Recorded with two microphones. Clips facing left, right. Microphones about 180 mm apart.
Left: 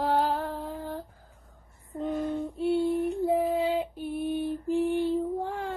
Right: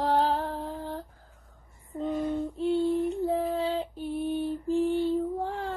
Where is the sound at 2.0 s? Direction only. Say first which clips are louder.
Right 1 dB; 15° left (ahead or behind).